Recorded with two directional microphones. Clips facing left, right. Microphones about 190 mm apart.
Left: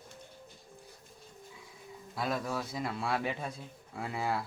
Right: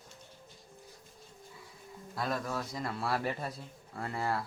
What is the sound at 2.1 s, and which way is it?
A man's voice, centre (ahead or behind).